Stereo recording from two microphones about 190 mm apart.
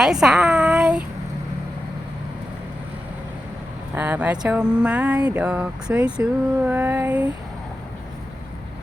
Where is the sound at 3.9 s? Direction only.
10° right (ahead or behind).